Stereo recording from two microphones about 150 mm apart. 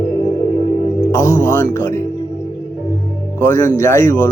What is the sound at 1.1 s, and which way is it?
Speech, 20° left (ahead or behind).